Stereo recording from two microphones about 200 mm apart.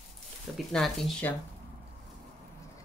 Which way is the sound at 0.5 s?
Centre (ahead or behind).